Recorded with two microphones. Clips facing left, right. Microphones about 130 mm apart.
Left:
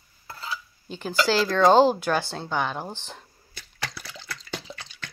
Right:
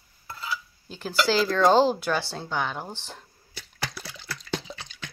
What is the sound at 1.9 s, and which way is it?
Speech, 50° left (ahead or behind).